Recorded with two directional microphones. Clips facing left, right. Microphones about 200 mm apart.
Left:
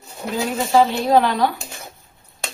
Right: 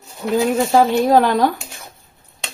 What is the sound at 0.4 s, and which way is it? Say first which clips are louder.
Speech: right 2 dB; 45° right (ahead or behind).